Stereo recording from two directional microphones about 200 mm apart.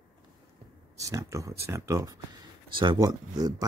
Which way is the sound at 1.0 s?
15° right (ahead or behind).